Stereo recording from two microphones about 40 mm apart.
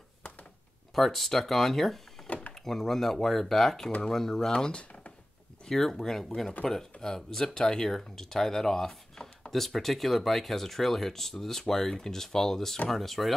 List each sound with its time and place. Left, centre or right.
0.9 s speech: centre
2.2 s door: left
2.5 s speech: centre
4.5 s speech: left
5.7 s speech: centre